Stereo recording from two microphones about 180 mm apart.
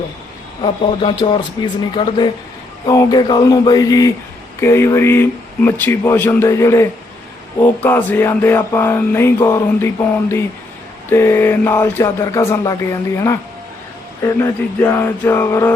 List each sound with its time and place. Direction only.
0.6 s speech: 25° left (ahead or behind)
4.6 s music: 15° left (ahead or behind)